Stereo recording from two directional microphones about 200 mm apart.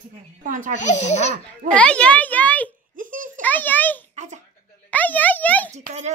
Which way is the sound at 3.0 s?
40° right (ahead or behind).